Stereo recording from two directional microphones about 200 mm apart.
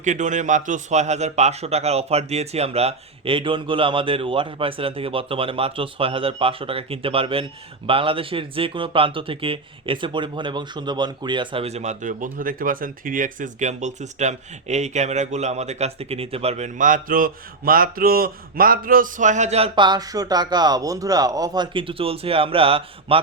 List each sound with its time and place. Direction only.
0.0 s speech: 40° right (ahead or behind)